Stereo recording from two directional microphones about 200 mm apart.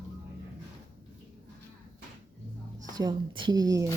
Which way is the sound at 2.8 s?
20° right (ahead or behind).